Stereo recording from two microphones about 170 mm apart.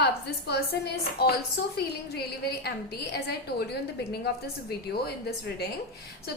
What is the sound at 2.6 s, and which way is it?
A woman's voice, 70° left (ahead or behind).